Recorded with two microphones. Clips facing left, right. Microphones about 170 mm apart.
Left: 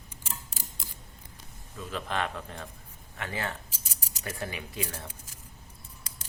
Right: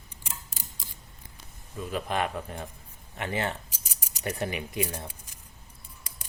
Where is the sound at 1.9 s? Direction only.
15° right (ahead or behind).